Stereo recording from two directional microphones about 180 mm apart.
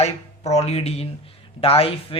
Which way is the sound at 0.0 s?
35° left (ahead or behind).